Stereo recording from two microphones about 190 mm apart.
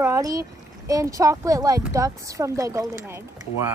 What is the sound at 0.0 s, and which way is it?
A child's voice, 15° right (ahead or behind).